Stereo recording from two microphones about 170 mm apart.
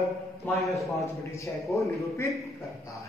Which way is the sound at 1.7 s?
15° left (ahead or behind).